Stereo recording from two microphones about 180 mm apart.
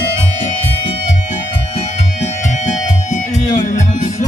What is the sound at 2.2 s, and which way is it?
Music, 40° left (ahead or behind).